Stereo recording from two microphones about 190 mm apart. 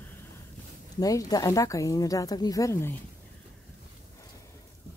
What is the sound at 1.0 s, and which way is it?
Speech, 20° left (ahead or behind).